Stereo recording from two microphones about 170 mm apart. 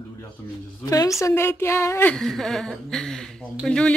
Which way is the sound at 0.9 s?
20° left (ahead or behind).